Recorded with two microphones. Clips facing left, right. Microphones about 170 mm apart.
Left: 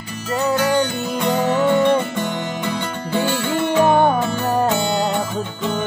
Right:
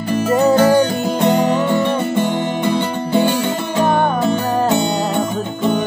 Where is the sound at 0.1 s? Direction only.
55° right (ahead or behind).